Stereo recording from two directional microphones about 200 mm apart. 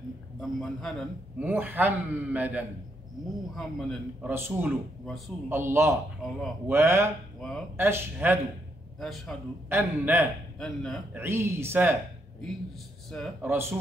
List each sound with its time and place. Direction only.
0.4 s a man's voice: centre (ahead or behind)
1.4 s a man's voice: 10° right (ahead or behind)
4.3 s a man's voice: 10° right (ahead or behind)
6.2 s a man's voice: centre (ahead or behind)
6.7 s a man's voice: 10° right (ahead or behind)
7.3 s speech: 5° left (ahead or behind)
7.7 s a man's voice: 10° right (ahead or behind)
9.0 s a man's voice: centre (ahead or behind)
9.7 s a man's voice: 10° right (ahead or behind)
10.6 s a man's voice: 5° left (ahead or behind)
11.1 s a man's voice: 10° right (ahead or behind)
13.4 s a man's voice: 10° right (ahead or behind)